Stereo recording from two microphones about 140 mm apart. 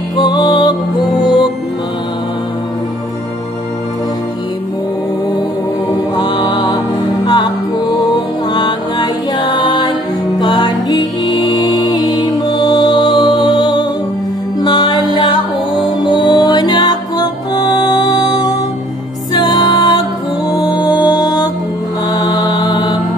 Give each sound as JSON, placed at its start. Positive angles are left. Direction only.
{"t": 0.2, "sound": "music", "side_deg": 30}
{"t": 6.1, "sound": "music", "side_deg": 35}
{"t": 21.0, "sound": "music", "side_deg": 30}
{"t": 22.1, "sound": "mantra", "side_deg": 30}